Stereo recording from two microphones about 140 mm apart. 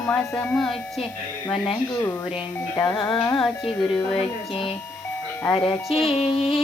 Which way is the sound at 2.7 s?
25° left (ahead or behind).